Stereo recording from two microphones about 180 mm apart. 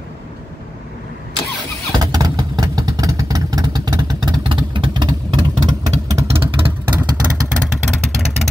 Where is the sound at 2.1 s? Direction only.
20° right (ahead or behind).